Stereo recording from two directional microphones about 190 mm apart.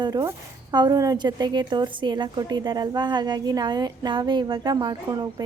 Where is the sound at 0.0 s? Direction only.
20° right (ahead or behind).